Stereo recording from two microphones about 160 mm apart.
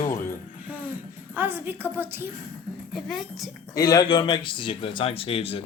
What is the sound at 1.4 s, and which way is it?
Speech, 10° right (ahead or behind).